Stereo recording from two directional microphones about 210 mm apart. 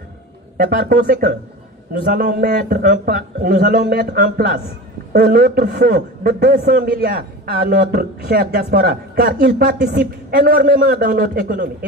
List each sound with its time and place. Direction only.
0.7 s a man's voice: 50° right (ahead or behind)